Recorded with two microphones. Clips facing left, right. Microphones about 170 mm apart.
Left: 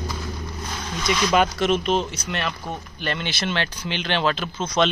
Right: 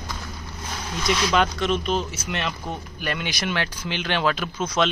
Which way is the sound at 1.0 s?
5° left (ahead or behind).